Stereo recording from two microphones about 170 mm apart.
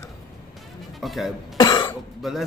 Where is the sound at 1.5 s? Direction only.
25° left (ahead or behind).